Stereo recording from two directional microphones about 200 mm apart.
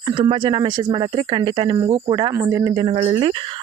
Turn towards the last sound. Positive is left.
turn(degrees=-25)  # may be behind; listen again after turning